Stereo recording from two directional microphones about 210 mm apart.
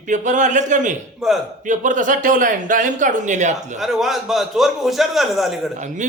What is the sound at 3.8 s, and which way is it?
A man's voice, centre (ahead or behind).